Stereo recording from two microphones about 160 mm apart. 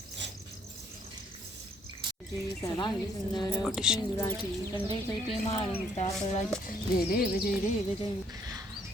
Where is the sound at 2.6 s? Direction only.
25° left (ahead or behind).